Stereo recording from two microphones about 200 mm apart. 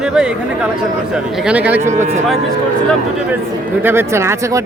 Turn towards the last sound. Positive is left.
turn(degrees=-15)  # may be behind; listen again after turning